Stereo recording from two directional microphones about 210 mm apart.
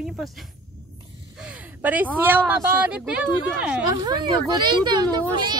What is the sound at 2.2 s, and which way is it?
Speech, 10° right (ahead or behind).